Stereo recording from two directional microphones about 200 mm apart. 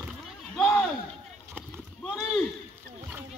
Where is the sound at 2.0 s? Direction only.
Centre (ahead or behind).